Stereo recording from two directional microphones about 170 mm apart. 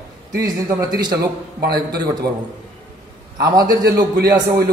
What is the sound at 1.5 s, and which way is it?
Speech, 65° right (ahead or behind).